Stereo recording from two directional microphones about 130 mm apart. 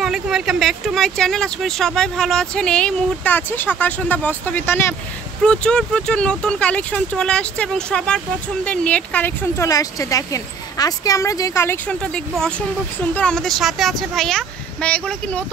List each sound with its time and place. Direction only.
0.0 s speech: 5° right (ahead or behind); by 9.7 s 15° left (ahead or behind)
9.7 s speech: 25° left (ahead or behind); by 15.4 s 10° left (ahead or behind)